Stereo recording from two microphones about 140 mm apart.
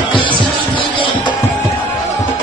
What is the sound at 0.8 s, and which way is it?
Music, 35° left (ahead or behind).